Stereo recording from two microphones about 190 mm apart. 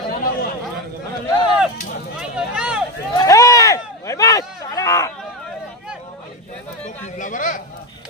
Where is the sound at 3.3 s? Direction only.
15° left (ahead or behind).